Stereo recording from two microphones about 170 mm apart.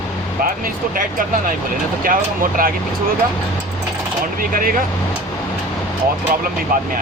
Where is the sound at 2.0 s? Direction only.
55° right (ahead or behind).